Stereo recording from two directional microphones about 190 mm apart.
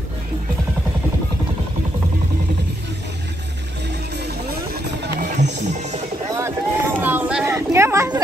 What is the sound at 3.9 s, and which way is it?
Music, 60° right (ahead or behind).